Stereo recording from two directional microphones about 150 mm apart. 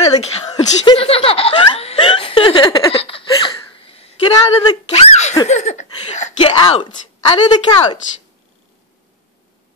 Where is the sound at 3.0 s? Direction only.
35° left (ahead or behind).